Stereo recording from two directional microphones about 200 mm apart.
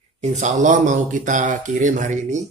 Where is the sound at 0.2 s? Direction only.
35° right (ahead or behind).